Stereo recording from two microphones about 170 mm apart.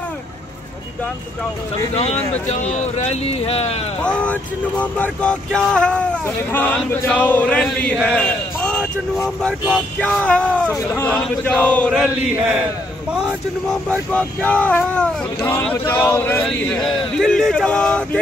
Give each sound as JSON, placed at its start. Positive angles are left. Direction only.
{"t": 2.5, "sound": "speech", "side_deg": 40}
{"t": 4.0, "sound": "speech", "side_deg": 5}